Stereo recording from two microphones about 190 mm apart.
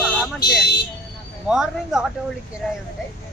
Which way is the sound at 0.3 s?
60° left (ahead or behind).